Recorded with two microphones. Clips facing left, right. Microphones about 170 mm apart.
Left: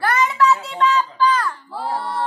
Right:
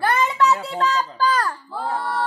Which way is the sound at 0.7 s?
40° right (ahead or behind).